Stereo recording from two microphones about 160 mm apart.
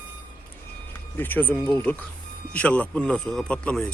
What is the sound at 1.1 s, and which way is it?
Speech, 10° left (ahead or behind).